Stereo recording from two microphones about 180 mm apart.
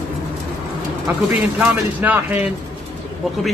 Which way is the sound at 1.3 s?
10° right (ahead or behind).